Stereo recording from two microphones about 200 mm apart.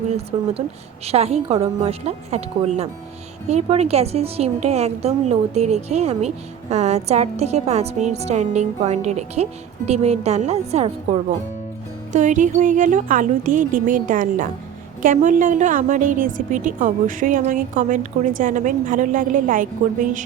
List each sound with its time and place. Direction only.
0.3 s a woman's voice: 30° right (ahead or behind)